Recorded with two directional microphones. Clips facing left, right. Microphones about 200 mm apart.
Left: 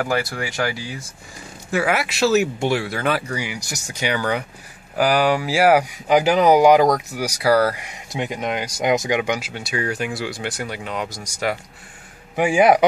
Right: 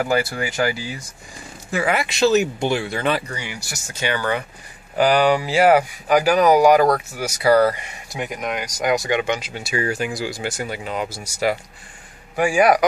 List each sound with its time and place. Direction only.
0.0 s speech: 5° right (ahead or behind)
6.0 s speech: 20° left (ahead or behind); by 7.9 s 5° left (ahead or behind)
7.9 s speech: 25° left (ahead or behind)
9.5 s speech: centre (ahead or behind)
12.4 s speech: 20° left (ahead or behind)